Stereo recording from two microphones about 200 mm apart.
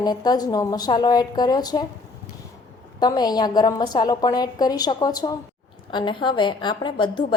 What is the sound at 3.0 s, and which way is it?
A woman's voice, 20° left (ahead or behind).